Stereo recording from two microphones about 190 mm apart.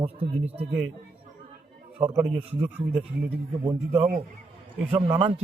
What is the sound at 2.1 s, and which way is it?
Speech, 15° right (ahead or behind).